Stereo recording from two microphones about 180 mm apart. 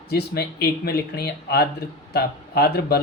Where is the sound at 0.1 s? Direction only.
60° left (ahead or behind).